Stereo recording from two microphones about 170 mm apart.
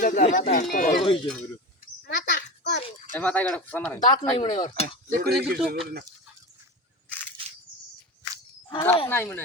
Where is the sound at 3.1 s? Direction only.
10° left (ahead or behind).